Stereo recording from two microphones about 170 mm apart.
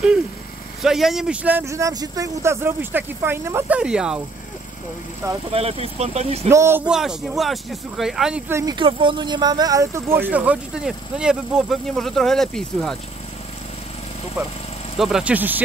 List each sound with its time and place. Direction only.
0.8 s speech: centre (ahead or behind)
5.5 s speech: 35° right (ahead or behind)
6.5 s speech: 15° right (ahead or behind)
6.9 s speech: 5° right (ahead or behind)
8.7 s speech: 30° right (ahead or behind); by 12.9 s centre (ahead or behind)
15.0 s speech: centre (ahead or behind)